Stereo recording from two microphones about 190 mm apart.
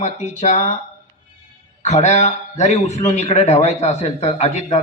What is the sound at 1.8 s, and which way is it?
A man's voice, 35° left (ahead or behind).